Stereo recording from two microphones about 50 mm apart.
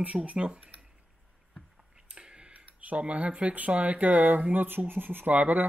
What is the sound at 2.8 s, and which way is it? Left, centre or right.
Speech, right.